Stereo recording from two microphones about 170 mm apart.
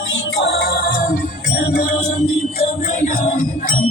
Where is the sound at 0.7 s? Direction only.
55° left (ahead or behind).